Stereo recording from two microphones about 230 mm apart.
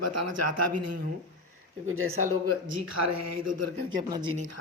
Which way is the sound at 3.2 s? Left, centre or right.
Right.